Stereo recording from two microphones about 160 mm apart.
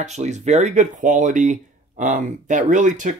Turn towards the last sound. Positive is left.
turn(degrees=-50)  # may be behind; listen again after turning